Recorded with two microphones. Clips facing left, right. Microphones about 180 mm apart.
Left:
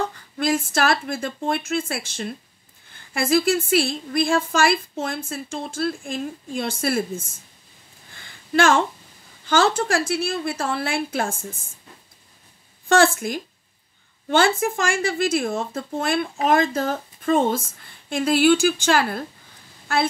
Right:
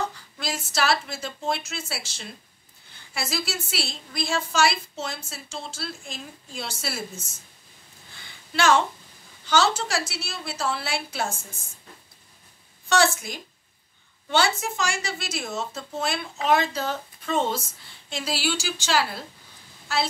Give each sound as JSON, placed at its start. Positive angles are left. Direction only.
{"t": 0.0, "sound": "speech", "side_deg": 55}
{"t": 8.2, "sound": "a sound", "side_deg": 50}
{"t": 9.5, "sound": "speech", "side_deg": 55}
{"t": 12.8, "sound": "speech", "side_deg": 55}
{"t": 14.6, "sound": "a woman's voice", "side_deg": 55}